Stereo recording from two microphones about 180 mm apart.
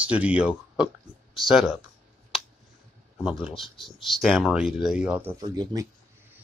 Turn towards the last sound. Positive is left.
turn(degrees=-20)  # may be behind; listen again after turning